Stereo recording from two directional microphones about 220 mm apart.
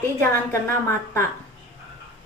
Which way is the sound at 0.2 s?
10° left (ahead or behind).